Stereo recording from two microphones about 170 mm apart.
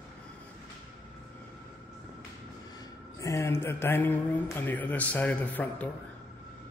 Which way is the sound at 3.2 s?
15° left (ahead or behind).